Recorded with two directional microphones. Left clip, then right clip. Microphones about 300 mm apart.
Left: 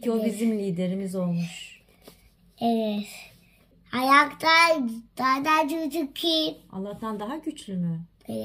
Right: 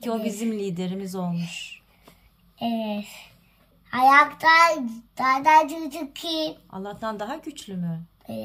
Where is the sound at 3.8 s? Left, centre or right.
Centre.